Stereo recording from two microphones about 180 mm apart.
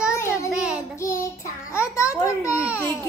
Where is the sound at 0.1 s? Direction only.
15° left (ahead or behind).